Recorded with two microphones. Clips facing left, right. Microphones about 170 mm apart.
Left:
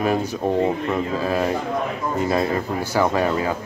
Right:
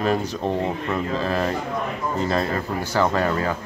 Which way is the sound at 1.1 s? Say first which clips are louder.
Left 1 dB; 10° left (ahead or behind).